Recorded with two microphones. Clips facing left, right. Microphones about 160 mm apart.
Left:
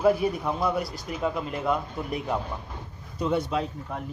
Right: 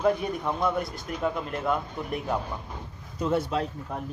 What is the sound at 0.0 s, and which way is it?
Speech, 5° left (ahead or behind).